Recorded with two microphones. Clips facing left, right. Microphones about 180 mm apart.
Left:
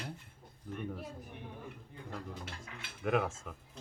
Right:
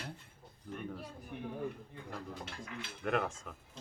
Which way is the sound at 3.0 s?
5° left (ahead or behind).